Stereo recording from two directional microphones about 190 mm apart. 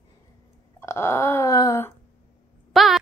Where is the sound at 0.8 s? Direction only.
15° left (ahead or behind).